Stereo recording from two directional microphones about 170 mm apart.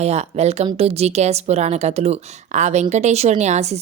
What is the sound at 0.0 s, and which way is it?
A woman's voice, 40° right (ahead or behind).